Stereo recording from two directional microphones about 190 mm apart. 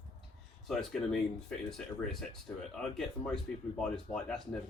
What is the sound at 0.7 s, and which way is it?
Speech, 5° left (ahead or behind).